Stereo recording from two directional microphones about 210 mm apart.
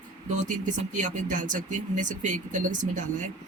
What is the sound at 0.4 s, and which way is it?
Speech, 35° right (ahead or behind).